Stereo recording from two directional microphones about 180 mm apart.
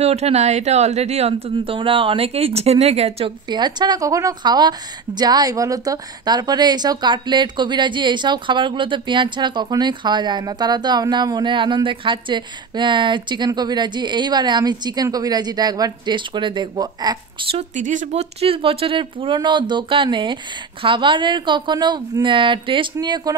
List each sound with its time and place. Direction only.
0.0 s speech: 35° right (ahead or behind)
17.6 s speech: 45° right (ahead or behind); by 23.3 s 20° right (ahead or behind)